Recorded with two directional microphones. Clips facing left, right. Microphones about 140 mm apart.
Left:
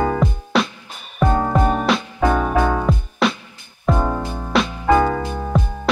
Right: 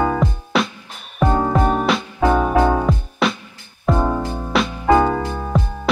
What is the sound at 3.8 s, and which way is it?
Music, 10° right (ahead or behind).